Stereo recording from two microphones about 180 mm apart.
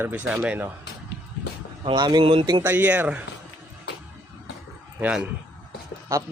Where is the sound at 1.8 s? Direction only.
25° right (ahead or behind).